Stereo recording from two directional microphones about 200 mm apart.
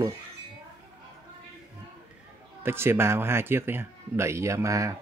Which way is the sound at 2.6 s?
10° right (ahead or behind).